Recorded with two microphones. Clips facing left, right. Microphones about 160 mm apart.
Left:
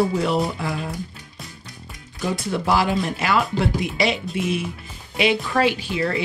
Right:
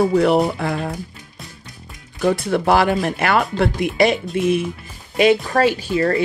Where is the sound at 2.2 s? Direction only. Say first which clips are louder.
Right 7 dB; 60° right (ahead or behind).